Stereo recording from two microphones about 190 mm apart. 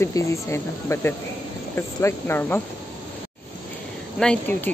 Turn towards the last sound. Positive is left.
turn(degrees=5)  # may be behind; listen again after turning